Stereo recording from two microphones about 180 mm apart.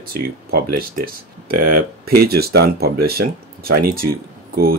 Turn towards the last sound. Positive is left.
turn(degrees=-55)  # may be behind; listen again after turning